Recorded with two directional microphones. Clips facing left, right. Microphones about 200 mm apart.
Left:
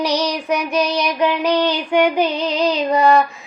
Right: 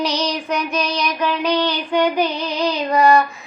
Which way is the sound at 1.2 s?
15° left (ahead or behind).